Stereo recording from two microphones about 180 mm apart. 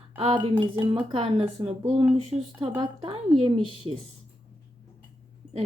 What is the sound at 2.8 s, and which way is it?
Speech, 30° right (ahead or behind).